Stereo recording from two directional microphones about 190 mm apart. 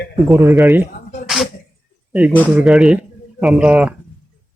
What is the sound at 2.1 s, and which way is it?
Speech, 5° right (ahead or behind).